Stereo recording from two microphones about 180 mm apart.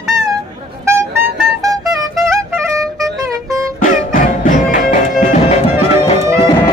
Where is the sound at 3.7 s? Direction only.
50° left (ahead or behind).